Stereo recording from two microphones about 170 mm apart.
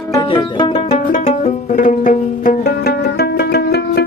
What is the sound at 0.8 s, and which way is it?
Music, 45° left (ahead or behind).